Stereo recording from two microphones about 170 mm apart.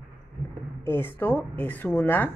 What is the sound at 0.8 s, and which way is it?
A woman's voice, 15° left (ahead or behind).